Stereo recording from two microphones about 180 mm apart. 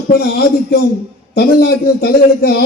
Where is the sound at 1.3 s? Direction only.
55° left (ahead or behind).